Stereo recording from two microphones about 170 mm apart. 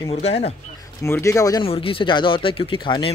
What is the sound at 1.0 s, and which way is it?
Speech, 15° left (ahead or behind).